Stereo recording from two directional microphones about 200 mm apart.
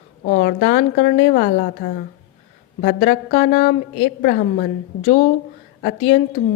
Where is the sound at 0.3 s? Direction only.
45° left (ahead or behind).